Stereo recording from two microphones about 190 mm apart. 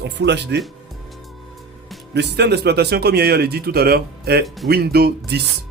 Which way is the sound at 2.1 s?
60° right (ahead or behind).